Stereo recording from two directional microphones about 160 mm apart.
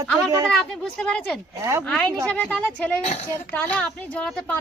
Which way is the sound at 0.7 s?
5° left (ahead or behind).